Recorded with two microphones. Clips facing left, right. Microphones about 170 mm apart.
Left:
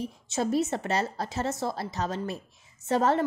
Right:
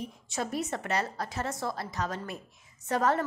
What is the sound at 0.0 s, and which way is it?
A woman's voice, 30° left (ahead or behind).